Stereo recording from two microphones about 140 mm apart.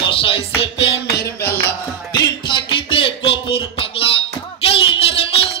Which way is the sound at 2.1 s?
35° left (ahead or behind).